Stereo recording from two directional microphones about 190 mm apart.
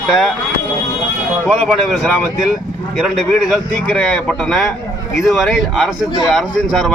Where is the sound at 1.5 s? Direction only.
Centre (ahead or behind).